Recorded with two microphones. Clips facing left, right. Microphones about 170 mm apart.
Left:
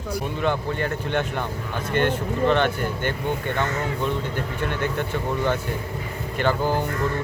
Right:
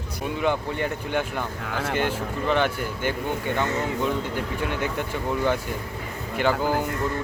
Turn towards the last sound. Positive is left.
turn(degrees=-10)  # may be behind; listen again after turning